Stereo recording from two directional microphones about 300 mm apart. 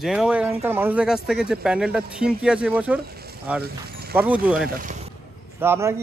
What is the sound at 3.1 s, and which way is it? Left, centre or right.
Frying, right.